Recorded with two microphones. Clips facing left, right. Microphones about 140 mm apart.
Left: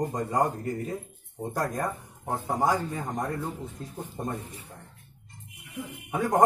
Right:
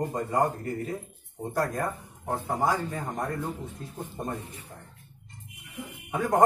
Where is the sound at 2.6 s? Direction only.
15° left (ahead or behind).